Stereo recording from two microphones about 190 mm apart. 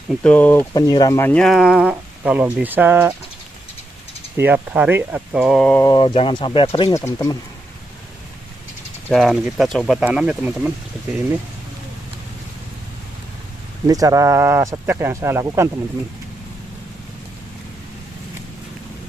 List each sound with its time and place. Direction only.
0.1 s speech: 5° left (ahead or behind); by 3.2 s 10° right (ahead or behind)
4.4 s speech: 10° right (ahead or behind)
5.9 s speech: 25° left (ahead or behind)
6.9 s speech: 15° left (ahead or behind)
9.1 s speech: centre (ahead or behind)
13.8 s speech: 20° right (ahead or behind)